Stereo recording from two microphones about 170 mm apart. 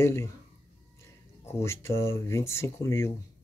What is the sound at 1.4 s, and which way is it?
Speech, 15° left (ahead or behind).